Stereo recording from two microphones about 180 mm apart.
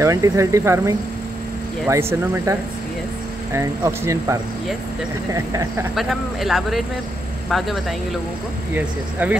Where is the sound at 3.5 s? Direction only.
15° right (ahead or behind).